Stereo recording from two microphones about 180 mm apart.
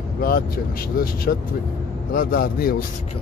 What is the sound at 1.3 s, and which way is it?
Speech, 55° left (ahead or behind).